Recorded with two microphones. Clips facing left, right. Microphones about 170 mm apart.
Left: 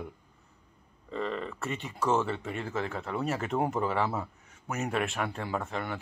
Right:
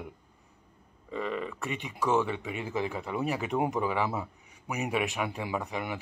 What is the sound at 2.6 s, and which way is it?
Speech, 15° right (ahead or behind).